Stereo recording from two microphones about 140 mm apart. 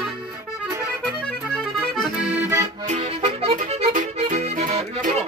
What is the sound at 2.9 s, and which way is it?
Accordion, 55° right (ahead or behind).